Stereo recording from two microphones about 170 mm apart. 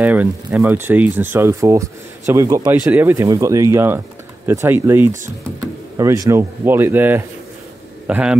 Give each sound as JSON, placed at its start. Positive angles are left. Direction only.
{"t": 0.0, "sound": "speech", "side_deg": -10}